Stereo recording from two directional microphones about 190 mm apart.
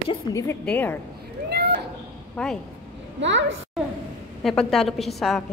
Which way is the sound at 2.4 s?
5° left (ahead or behind).